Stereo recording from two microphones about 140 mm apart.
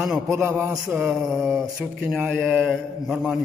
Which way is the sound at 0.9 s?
5° right (ahead or behind).